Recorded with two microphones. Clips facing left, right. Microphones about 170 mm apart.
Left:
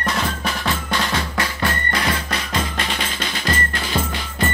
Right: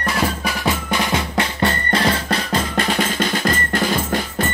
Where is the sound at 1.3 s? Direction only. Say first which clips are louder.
Right 3 dB; 30° right (ahead or behind); by 4.2 s 45° right (ahead or behind).